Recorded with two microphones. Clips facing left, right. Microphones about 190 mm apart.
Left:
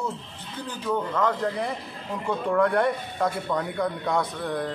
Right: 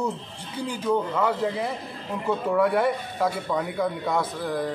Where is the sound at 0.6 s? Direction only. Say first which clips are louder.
Right 3 dB; 10° right (ahead or behind).